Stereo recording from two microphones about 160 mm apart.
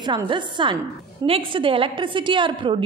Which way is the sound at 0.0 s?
30° right (ahead or behind).